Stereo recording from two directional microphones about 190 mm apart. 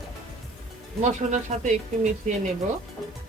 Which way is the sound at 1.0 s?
40° right (ahead or behind).